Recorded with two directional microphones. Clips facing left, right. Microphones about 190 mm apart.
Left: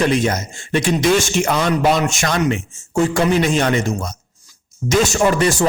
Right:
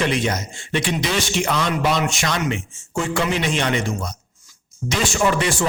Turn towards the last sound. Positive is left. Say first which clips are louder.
# left 4 dB
turn(degrees=40)  # may be behind; listen again after turning